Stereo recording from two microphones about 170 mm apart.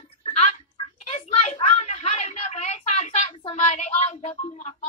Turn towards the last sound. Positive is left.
turn(degrees=40)  # may be behind; listen again after turning